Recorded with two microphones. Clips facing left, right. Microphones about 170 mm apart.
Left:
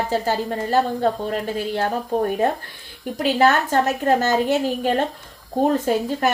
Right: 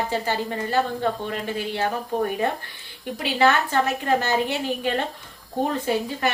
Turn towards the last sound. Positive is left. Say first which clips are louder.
# left 4 dB
turn(degrees=45)  # may be behind; listen again after turning